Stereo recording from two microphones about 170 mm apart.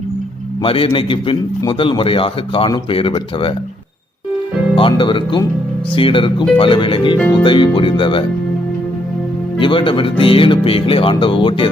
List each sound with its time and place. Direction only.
0.6 s a man's voice: 30° left (ahead or behind)
4.7 s a man's voice: 30° left (ahead or behind)
7.2 s speech: 5° left (ahead or behind)
7.4 s speech: 30° left (ahead or behind)
9.6 s a man's voice: 30° left (ahead or behind)